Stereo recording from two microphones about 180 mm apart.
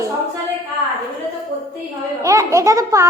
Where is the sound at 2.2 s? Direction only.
15° right (ahead or behind).